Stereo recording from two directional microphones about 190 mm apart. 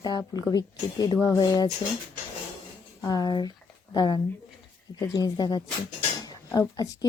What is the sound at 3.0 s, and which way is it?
Speech, 20° left (ahead or behind).